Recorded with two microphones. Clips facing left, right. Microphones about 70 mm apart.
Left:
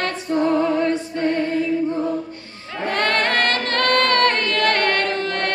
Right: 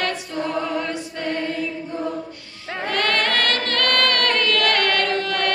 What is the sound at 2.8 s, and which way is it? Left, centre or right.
Chant, left.